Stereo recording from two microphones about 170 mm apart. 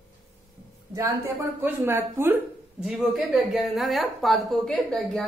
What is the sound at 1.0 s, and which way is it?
A woman's voice, 20° right (ahead or behind).